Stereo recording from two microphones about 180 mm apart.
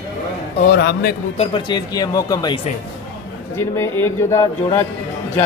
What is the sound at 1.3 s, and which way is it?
Speech, 25° left (ahead or behind).